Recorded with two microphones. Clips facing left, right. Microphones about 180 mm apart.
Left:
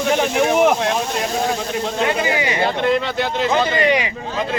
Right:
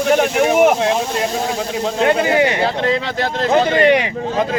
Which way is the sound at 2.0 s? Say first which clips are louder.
Right 8 dB; 60° right (ahead or behind).